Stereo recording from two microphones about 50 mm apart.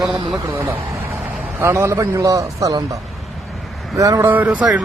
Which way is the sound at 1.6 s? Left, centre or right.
Right.